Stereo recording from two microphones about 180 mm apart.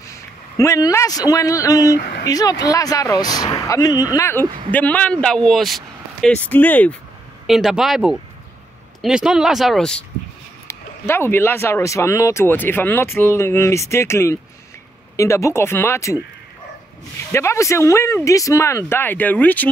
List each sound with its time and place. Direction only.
0.0 s a man's voice: 15° left (ahead or behind)
2.0 s speech: 60° left (ahead or behind)
2.2 s speech: 20° left (ahead or behind)
7.4 s speech: centre (ahead or behind); by 16.2 s 15° left (ahead or behind)
17.3 s speech: 15° left (ahead or behind)